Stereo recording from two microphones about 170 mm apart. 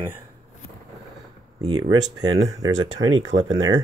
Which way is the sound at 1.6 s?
25° right (ahead or behind).